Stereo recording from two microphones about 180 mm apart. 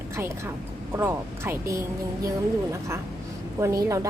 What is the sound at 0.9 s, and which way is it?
Speech, 15° right (ahead or behind).